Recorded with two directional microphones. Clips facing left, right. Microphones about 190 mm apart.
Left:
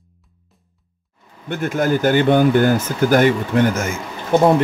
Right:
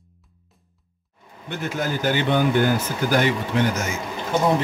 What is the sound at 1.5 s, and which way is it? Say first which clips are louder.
Speech: left 7 dB; 50° left (ahead or behind).